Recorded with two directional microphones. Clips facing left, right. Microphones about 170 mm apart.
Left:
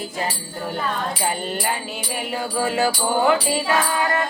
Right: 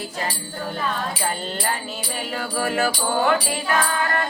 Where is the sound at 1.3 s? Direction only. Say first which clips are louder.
Left 2 dB; 15° left (ahead or behind).